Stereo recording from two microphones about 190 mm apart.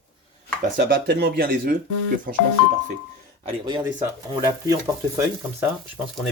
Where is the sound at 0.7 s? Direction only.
60° right (ahead or behind).